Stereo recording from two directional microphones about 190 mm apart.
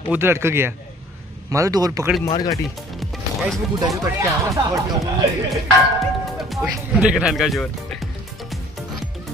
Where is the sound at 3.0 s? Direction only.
Centre (ahead or behind).